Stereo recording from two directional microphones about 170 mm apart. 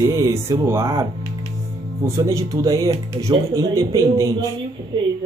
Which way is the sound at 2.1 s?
20° right (ahead or behind).